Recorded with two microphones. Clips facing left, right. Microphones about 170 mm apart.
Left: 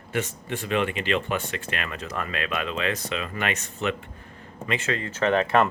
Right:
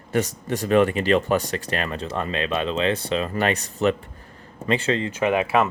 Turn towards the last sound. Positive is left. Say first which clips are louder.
# right 1 dB
turn(degrees=-10)  # may be behind; listen again after turning